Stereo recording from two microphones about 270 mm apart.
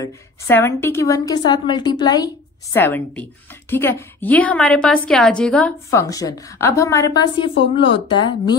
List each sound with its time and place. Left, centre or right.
0.0 s a woman's voice: centre